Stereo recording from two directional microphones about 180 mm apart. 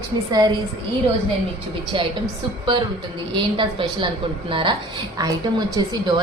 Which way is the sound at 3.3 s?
25° right (ahead or behind).